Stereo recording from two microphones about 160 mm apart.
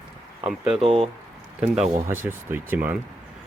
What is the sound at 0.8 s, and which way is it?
Speech, 40° right (ahead or behind).